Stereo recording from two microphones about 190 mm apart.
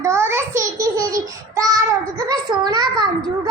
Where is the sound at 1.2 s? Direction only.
20° right (ahead or behind).